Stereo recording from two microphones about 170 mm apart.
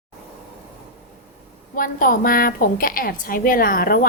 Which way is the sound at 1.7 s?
55° left (ahead or behind).